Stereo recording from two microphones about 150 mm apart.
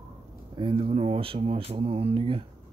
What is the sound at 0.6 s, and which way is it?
Speech, 35° right (ahead or behind).